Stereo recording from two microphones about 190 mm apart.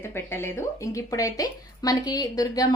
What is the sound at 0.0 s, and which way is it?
Speech, 10° left (ahead or behind).